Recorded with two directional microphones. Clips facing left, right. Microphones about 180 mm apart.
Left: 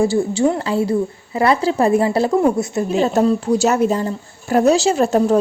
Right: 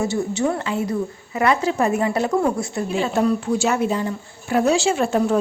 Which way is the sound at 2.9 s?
40° left (ahead or behind).